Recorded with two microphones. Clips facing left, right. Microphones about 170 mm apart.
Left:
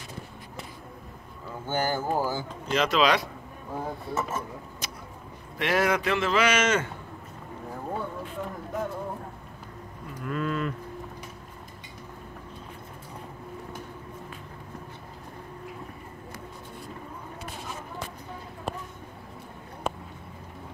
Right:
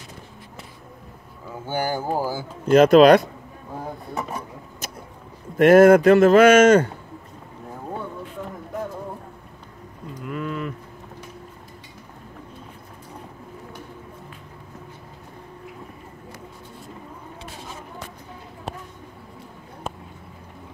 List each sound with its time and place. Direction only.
1.7 s speech: 15° right (ahead or behind)
2.7 s speech: 50° right (ahead or behind)
4.1 s speech: 15° right (ahead or behind)
5.6 s speech: 50° right (ahead or behind)
10.2 s cattle: 15° right (ahead or behind)